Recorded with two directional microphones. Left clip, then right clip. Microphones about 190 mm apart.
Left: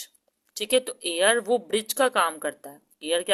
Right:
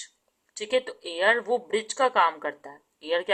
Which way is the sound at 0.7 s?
50° left (ahead or behind).